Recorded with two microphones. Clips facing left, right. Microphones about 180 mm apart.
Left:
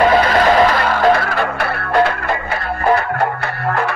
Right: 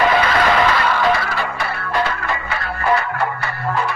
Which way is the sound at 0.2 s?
40° left (ahead or behind).